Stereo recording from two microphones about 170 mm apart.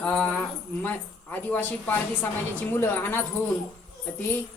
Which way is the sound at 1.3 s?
10° left (ahead or behind).